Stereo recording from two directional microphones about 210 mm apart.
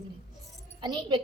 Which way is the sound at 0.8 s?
20° right (ahead or behind).